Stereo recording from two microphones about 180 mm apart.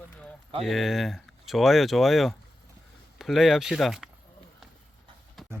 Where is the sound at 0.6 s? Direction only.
Centre (ahead or behind).